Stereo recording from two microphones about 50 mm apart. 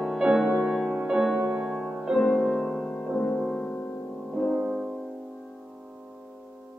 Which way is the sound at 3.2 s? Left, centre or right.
Left.